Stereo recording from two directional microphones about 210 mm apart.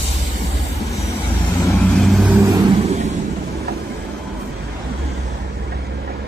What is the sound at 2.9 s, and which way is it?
Vehicle, 30° right (ahead or behind).